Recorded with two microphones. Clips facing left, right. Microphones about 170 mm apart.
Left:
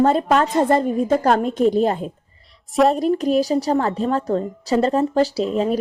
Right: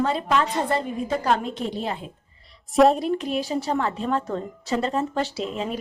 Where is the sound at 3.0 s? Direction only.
40° left (ahead or behind).